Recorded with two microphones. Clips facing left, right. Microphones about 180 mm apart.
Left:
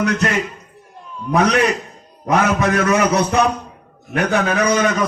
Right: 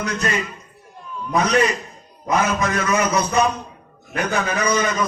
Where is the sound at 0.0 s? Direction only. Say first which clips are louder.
Left 5 dB; 70° left (ahead or behind).